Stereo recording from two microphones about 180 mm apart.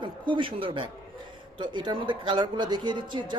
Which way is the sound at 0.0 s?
25° right (ahead or behind).